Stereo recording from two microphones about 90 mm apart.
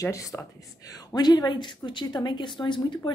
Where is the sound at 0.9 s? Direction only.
50° left (ahead or behind).